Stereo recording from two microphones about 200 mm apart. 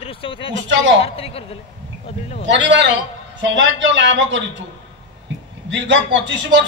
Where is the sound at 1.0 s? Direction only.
30° left (ahead or behind).